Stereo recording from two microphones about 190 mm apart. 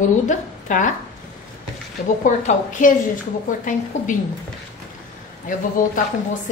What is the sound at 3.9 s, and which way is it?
Speech, 40° left (ahead or behind).